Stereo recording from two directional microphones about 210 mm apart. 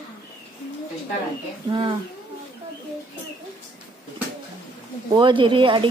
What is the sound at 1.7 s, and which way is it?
Speech, 25° right (ahead or behind).